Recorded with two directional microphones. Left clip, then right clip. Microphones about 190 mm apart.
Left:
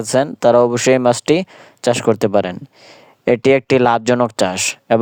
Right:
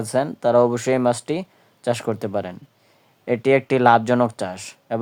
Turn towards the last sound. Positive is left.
turn(degrees=50)  # may be behind; listen again after turning